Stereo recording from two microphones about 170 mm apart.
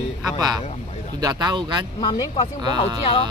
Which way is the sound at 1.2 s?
25° right (ahead or behind).